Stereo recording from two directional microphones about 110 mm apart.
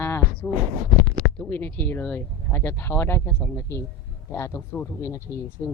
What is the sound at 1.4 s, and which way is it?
Speech, 15° left (ahead or behind).